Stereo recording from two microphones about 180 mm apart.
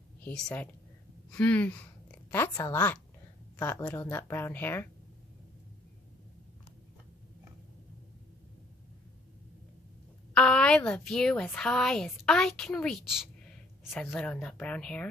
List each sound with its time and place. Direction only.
0.2 s a woman's voice: 5° left (ahead or behind)
10.3 s a woman's voice: 5° left (ahead or behind)